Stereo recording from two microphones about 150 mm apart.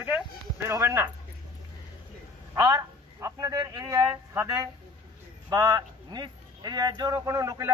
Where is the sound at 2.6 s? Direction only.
25° right (ahead or behind).